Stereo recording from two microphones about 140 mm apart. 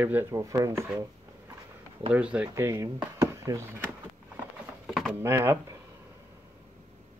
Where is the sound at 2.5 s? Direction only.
20° right (ahead or behind).